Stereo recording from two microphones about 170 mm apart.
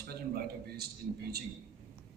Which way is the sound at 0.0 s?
65° right (ahead or behind).